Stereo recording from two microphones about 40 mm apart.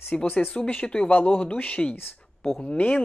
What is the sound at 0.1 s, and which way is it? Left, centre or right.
Speech, centre.